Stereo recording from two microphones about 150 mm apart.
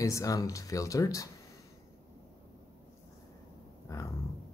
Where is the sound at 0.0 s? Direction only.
20° left (ahead or behind).